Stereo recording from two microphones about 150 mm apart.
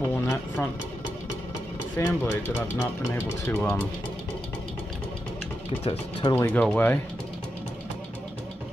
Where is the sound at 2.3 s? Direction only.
15° left (ahead or behind).